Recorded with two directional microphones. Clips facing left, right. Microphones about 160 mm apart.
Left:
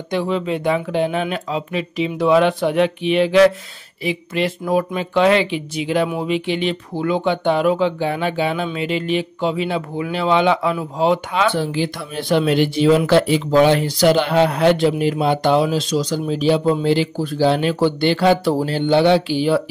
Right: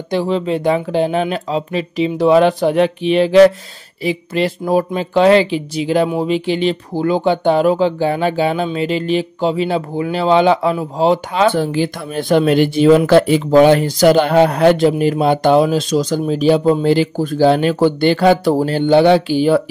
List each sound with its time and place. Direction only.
0.1 s speech: 35° right (ahead or behind)